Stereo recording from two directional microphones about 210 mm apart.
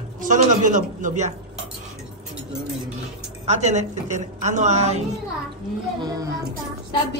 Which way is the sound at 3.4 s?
35° right (ahead or behind).